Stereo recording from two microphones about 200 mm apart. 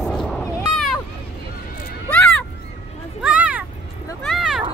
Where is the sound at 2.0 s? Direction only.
5° left (ahead or behind).